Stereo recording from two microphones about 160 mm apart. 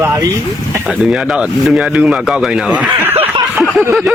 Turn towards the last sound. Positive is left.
turn(degrees=-10)  # may be behind; listen again after turning